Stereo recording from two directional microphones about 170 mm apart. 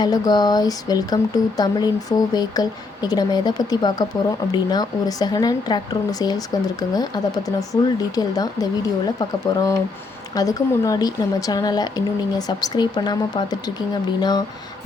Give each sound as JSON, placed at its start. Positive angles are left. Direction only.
{"t": 0.0, "sound": "speech", "side_deg": 25}